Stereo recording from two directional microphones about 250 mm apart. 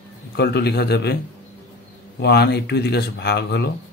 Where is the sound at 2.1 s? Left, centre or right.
Left.